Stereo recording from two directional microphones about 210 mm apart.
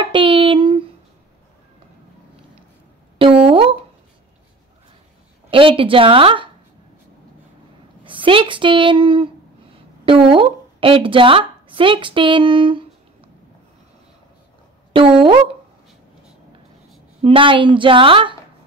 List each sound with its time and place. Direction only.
0.0 s a sound: 25° right (ahead or behind)
3.2 s a sound: 25° right (ahead or behind)
5.5 s a woman's voice: 25° right (ahead or behind)
8.0 s a woman's voice: 25° right (ahead or behind)
14.9 s speech: 25° right (ahead or behind)
17.2 s a woman's voice: 25° right (ahead or behind)